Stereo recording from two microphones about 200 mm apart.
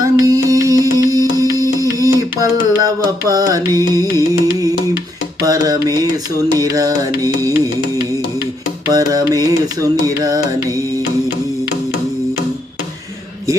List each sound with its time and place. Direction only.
0.0 s music: 15° right (ahead or behind)
5.4 s mantra: 20° right (ahead or behind)
8.9 s mantra: 20° right (ahead or behind)